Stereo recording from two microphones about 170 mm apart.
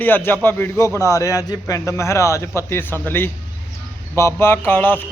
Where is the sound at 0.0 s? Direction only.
10° left (ahead or behind).